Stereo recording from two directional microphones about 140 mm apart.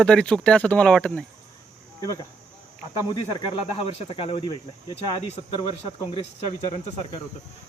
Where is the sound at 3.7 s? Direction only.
40° left (ahead or behind).